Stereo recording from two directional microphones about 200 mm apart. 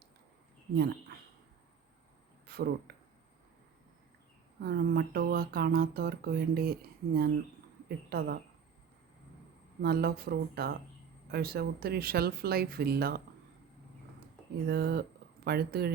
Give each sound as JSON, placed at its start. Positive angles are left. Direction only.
{"t": 2.5, "sound": "speech", "side_deg": -50}
{"t": 4.6, "sound": "speech", "side_deg": -50}
{"t": 9.8, "sound": "speech", "side_deg": -50}
{"t": 14.7, "sound": "speech", "side_deg": -55}